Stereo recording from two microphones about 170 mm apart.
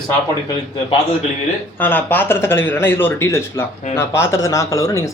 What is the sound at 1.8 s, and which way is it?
A man's voice, 10° left (ahead or behind).